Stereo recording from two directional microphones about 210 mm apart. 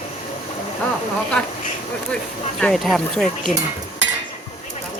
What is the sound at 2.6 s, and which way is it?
Speech, centre (ahead or behind).